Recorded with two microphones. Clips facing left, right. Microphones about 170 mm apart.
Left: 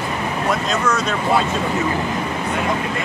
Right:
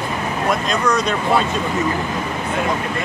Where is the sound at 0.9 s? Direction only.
15° right (ahead or behind).